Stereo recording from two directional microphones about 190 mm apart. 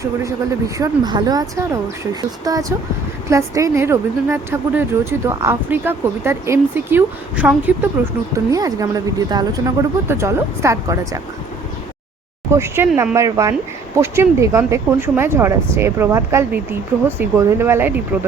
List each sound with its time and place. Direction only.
0.8 s a woman's voice: 20° right (ahead or behind)
12.5 s speech: 15° right (ahead or behind)